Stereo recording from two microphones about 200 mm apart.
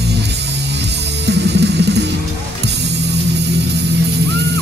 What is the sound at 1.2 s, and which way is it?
Music, 60° right (ahead or behind).